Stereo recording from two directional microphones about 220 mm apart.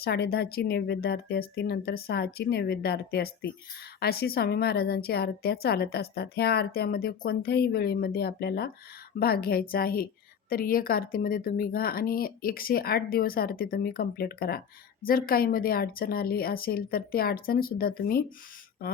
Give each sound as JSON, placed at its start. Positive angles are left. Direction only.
{"t": 0.0, "sound": "a woman's voice", "side_deg": 45}